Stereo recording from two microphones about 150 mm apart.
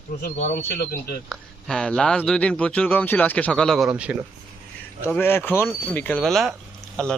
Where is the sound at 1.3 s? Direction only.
5° left (ahead or behind).